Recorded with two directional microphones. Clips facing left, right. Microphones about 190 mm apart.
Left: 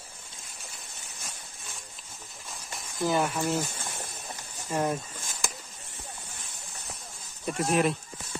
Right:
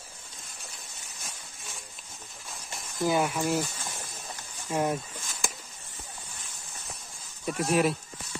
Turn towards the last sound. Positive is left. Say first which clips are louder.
# even
turn(degrees=0)  # may be behind; listen again after turning